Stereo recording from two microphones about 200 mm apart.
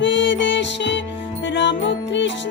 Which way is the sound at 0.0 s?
65° left (ahead or behind).